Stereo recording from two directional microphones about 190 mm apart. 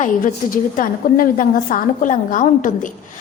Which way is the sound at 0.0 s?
45° left (ahead or behind).